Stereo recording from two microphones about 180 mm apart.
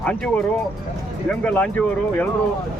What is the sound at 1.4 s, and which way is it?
Speech, 5° left (ahead or behind).